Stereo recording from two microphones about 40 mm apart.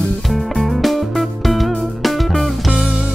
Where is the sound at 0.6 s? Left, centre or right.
Centre.